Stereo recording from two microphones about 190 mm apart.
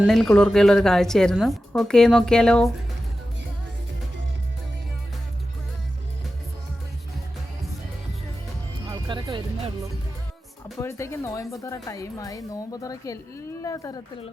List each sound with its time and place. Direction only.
0.0 s speech: centre (ahead or behind)
8.9 s music: 25° right (ahead or behind)
10.8 s a woman's voice: 15° left (ahead or behind)